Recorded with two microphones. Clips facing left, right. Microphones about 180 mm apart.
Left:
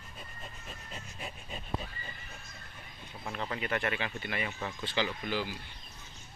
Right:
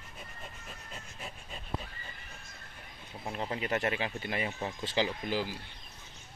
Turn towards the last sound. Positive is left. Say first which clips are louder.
# right 1 dB
turn(degrees=-35)  # may be behind; listen again after turning